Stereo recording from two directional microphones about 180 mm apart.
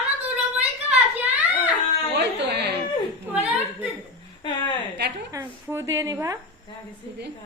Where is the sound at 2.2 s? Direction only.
70° right (ahead or behind).